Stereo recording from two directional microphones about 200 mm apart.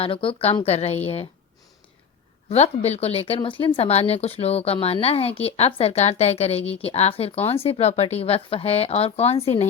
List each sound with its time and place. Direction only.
0.0 s speech: 25° left (ahead or behind)
2.5 s speech: 30° left (ahead or behind)